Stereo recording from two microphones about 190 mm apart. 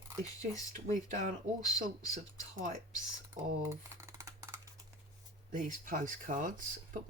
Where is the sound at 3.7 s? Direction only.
15° right (ahead or behind).